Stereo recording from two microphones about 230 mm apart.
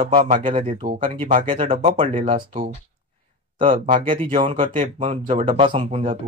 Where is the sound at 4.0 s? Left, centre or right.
Right.